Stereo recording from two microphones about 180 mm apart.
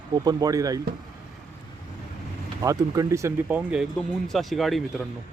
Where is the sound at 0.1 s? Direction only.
20° right (ahead or behind).